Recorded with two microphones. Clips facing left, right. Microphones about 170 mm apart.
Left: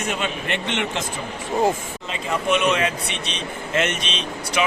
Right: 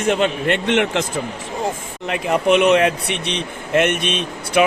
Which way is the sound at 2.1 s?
70° right (ahead or behind).